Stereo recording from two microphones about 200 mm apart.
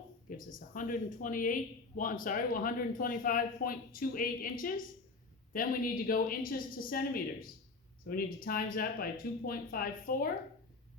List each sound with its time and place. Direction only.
0.3 s speech: 40° left (ahead or behind)